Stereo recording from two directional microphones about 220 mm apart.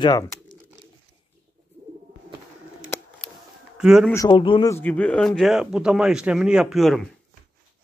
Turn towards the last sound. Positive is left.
turn(degrees=0)  # may be behind; listen again after turning